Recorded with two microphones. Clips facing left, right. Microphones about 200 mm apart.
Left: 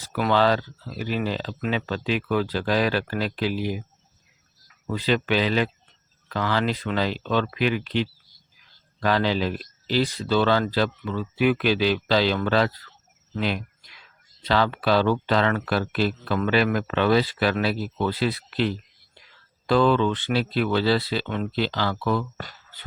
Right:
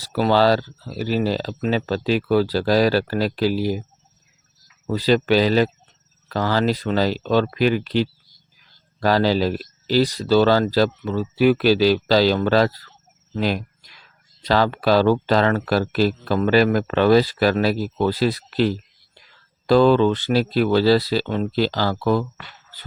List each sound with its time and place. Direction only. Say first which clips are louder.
0.0 s speech: right 4 dB; 35° right (ahead or behind)
4.9 s speech: right 6 dB; 35° right (ahead or behind)
13.3 s a sound: right 4 dB; 40° right (ahead or behind)
14.4 s speech: right 4 dB; 40° right (ahead or behind)